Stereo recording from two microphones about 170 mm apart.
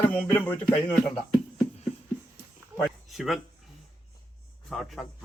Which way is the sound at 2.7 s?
Centre (ahead or behind).